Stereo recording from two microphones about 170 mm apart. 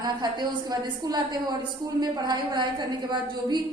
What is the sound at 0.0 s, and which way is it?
A woman's voice, 25° right (ahead or behind).